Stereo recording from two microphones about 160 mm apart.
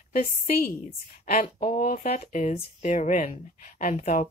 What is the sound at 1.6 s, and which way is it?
Speech, 55° left (ahead or behind).